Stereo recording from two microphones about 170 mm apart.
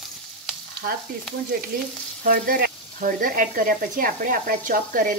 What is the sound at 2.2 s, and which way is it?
Speech, 55° right (ahead or behind).